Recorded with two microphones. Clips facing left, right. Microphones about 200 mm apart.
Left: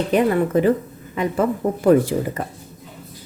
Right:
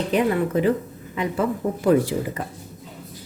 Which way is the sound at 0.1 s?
45° left (ahead or behind).